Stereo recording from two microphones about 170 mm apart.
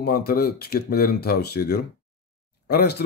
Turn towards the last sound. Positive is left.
turn(degrees=70)  # may be behind; listen again after turning